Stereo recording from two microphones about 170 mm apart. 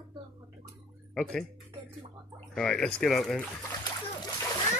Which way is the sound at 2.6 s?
5° left (ahead or behind).